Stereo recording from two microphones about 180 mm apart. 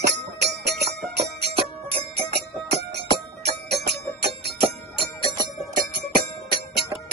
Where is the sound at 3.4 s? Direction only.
65° right (ahead or behind).